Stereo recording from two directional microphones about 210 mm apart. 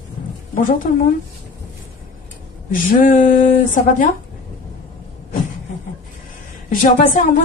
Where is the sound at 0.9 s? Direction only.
40° left (ahead or behind).